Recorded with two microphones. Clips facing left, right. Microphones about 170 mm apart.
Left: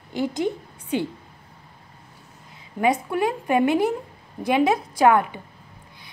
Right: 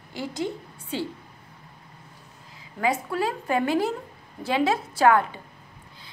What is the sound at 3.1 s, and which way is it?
A woman's voice, 20° left (ahead or behind).